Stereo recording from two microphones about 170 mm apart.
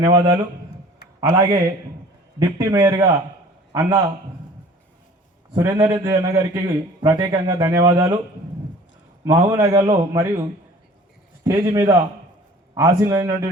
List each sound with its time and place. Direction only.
0.0 s a man's voice: 25° right (ahead or behind)
5.5 s a man's voice: 20° right (ahead or behind)
9.2 s a man's voice: 20° right (ahead or behind)
11.4 s a man's voice: 20° right (ahead or behind)